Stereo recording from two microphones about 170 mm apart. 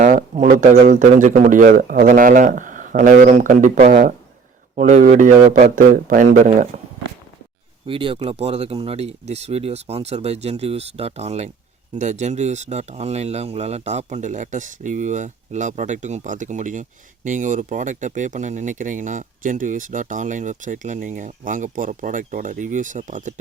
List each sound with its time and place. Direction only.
0.0 s a sound: 50° right (ahead or behind)
0.6 s speech: 45° right (ahead or behind)
7.9 s speech: 30° right (ahead or behind); by 23.3 s 50° right (ahead or behind)